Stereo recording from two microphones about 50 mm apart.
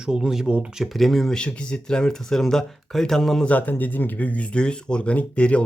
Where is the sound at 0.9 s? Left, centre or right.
Centre.